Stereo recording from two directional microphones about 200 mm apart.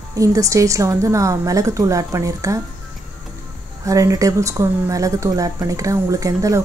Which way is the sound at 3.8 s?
15° right (ahead or behind).